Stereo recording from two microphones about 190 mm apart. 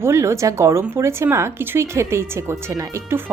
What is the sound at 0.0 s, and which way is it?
Speech, 15° right (ahead or behind).